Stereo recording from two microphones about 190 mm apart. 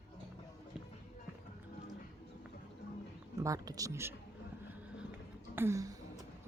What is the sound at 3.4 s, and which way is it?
Speech, 20° right (ahead or behind).